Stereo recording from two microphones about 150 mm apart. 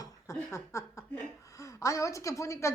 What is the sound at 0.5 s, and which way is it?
A woman's voice, 20° left (ahead or behind).